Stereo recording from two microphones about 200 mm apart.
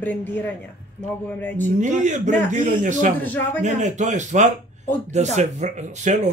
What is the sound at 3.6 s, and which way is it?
Speech, 35° right (ahead or behind).